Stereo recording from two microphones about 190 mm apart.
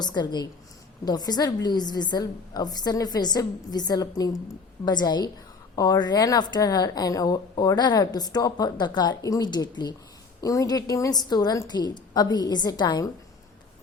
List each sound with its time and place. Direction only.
0.0 s a woman's voice: 20° left (ahead or behind)